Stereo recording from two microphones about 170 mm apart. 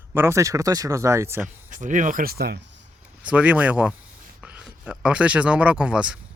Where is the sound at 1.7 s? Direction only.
50° right (ahead or behind); by 2.6 s 70° right (ahead or behind).